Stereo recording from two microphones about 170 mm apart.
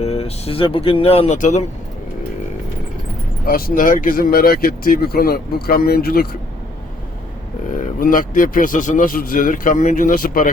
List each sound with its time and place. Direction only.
0.0 s speech: 35° left (ahead or behind)
3.4 s speech: 55° left (ahead or behind)
7.7 s speech: 55° left (ahead or behind)